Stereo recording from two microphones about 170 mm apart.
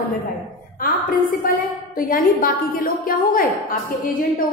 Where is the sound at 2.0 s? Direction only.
55° left (ahead or behind).